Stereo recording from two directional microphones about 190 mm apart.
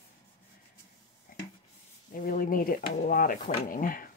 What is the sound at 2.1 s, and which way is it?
Speech, 45° left (ahead or behind).